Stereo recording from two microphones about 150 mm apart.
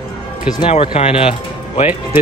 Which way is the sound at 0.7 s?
40° left (ahead or behind).